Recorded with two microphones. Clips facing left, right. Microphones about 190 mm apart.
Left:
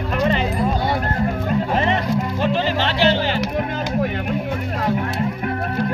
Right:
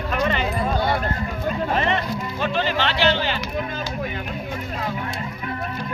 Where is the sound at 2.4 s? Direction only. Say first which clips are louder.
Right 1 dB; 35° left (ahead or behind).